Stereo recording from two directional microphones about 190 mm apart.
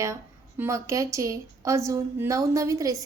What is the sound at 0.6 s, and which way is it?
A woman's voice, 15° right (ahead or behind).